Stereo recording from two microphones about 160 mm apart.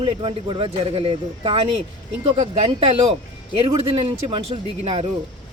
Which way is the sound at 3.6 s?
30° right (ahead or behind).